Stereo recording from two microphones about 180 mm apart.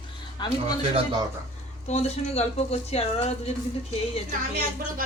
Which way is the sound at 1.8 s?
35° left (ahead or behind).